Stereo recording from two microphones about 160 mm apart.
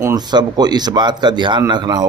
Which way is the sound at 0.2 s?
25° right (ahead or behind).